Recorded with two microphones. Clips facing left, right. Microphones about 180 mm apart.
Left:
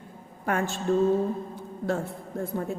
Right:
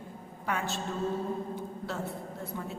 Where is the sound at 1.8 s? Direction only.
50° left (ahead or behind).